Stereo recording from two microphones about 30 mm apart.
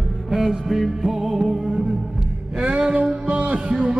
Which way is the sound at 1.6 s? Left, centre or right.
Centre.